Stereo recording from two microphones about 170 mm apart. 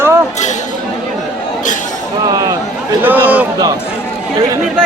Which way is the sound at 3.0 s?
10° right (ahead or behind).